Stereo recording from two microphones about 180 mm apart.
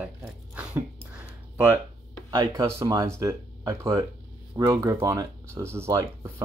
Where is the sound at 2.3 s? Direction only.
25° right (ahead or behind).